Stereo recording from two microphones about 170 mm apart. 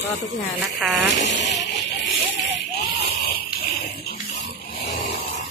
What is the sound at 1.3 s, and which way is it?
Speech, 90° left.